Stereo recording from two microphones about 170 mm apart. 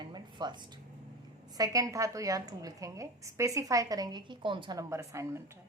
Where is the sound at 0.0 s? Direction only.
25° right (ahead or behind).